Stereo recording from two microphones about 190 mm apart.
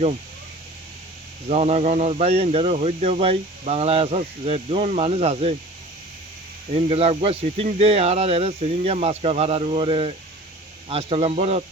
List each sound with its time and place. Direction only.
1.5 s speech: 35° right (ahead or behind)
6.7 s speech: 35° right (ahead or behind)